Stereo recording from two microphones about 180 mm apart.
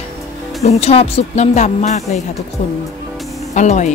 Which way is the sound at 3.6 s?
40° left (ahead or behind).